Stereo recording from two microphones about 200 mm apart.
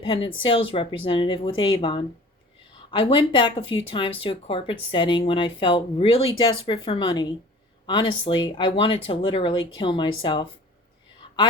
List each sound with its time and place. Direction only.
0.0 s speech: 25° left (ahead or behind)